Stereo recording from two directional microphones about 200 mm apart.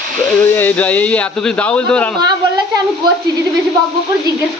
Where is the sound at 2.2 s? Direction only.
20° right (ahead or behind).